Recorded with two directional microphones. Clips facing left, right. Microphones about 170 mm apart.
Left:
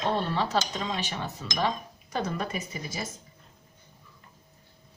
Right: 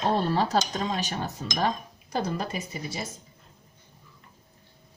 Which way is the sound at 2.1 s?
30° right (ahead or behind).